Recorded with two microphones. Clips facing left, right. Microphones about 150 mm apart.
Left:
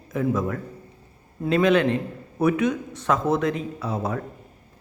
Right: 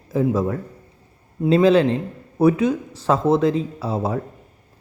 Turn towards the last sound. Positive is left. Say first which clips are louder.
# right 4 dB
turn(degrees=-30)  # may be behind; listen again after turning